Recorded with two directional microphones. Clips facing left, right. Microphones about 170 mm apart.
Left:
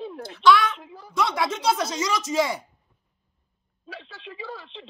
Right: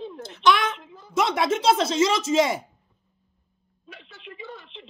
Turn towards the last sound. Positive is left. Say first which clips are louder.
# left 2 dB
turn(degrees=35)  # may be behind; listen again after turning